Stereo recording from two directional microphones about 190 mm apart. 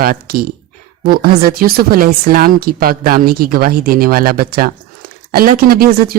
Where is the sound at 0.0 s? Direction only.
50° right (ahead or behind).